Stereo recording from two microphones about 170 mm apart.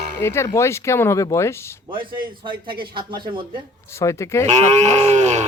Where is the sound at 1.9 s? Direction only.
30° right (ahead or behind).